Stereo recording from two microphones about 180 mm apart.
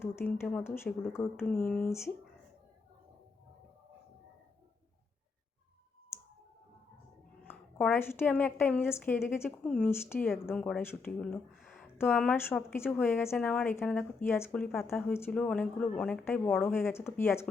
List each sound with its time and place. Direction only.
0.0 s a woman's voice: 10° left (ahead or behind)
7.4 s a woman's voice: 10° left (ahead or behind)